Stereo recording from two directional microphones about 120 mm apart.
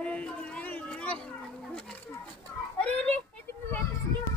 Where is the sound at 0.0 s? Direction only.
10° left (ahead or behind).